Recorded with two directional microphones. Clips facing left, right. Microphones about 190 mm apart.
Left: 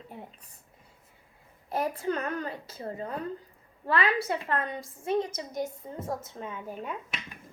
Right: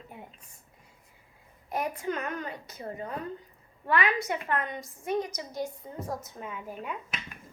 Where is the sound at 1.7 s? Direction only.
30° left (ahead or behind).